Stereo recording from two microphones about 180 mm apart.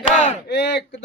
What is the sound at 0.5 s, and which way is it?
Speech, 65° left (ahead or behind).